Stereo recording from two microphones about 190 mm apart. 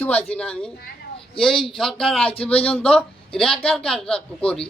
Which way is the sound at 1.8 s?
Centre (ahead or behind).